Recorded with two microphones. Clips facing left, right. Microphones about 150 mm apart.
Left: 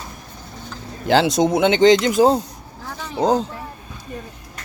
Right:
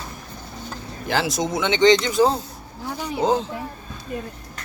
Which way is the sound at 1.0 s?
70° left (ahead or behind).